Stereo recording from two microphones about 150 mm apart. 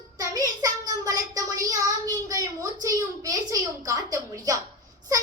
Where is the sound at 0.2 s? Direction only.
25° right (ahead or behind).